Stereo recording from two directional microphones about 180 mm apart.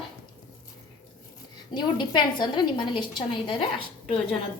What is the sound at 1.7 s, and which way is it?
A woman's voice, 25° left (ahead or behind).